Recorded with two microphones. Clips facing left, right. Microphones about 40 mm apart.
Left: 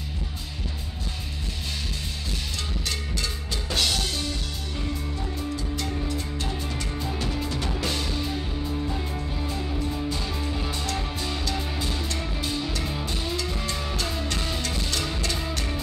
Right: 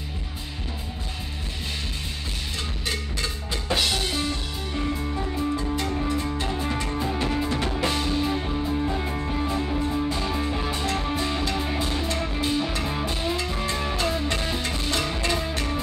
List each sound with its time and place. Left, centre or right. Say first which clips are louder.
3.2 s drum kit: right 1 dB; centre
4.7 s music: right 5 dB; right